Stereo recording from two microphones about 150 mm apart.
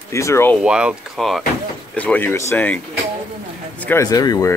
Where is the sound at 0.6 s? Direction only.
5° right (ahead or behind).